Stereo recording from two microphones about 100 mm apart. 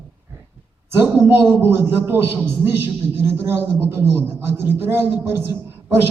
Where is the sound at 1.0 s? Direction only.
20° right (ahead or behind).